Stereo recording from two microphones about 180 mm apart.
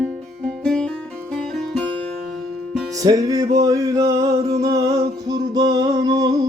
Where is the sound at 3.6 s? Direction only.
20° right (ahead or behind).